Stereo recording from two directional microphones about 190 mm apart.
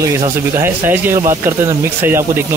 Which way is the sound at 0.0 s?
15° right (ahead or behind).